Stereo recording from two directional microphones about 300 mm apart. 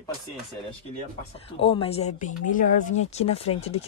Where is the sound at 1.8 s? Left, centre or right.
Centre.